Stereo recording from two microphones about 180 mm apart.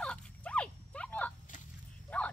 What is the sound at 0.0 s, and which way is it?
Dog, 5° left (ahead or behind).